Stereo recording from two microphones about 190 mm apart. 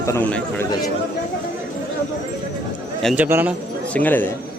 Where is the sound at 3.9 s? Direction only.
10° left (ahead or behind).